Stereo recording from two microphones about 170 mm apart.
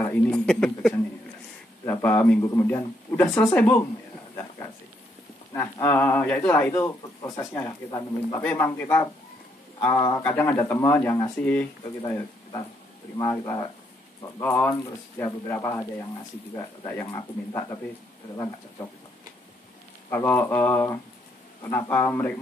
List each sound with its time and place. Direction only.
0.0 s a sound: 10° left (ahead or behind)
1.9 s a man's voice: 10° left (ahead or behind)
5.5 s a man's voice: 15° left (ahead or behind)
13.2 s a man's voice: 15° left (ahead or behind)
18.3 s speech: 20° left (ahead or behind)
20.1 s a man's voice: 10° left (ahead or behind)